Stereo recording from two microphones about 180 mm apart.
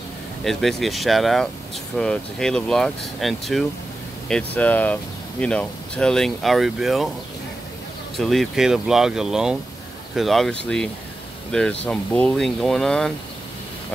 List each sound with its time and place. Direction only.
0.4 s speech: centre (ahead or behind)
8.2 s speech: centre (ahead or behind)
11.8 s speech: 5° left (ahead or behind)